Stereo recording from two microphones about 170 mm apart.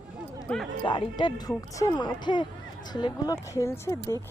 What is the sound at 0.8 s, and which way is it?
Speech, 30° left (ahead or behind).